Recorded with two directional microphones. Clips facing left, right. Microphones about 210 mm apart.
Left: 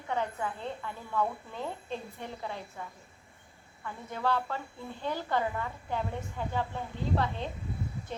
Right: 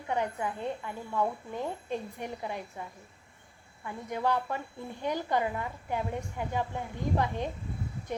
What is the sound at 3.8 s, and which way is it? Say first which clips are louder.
Speech: right 2 dB; 15° right (ahead or behind).